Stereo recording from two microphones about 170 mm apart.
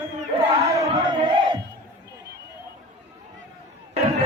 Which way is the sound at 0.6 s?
25° right (ahead or behind).